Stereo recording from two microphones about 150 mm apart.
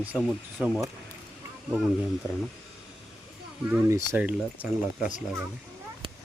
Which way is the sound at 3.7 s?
20° right (ahead or behind).